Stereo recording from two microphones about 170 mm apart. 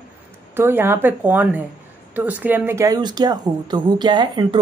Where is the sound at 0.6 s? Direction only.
15° right (ahead or behind).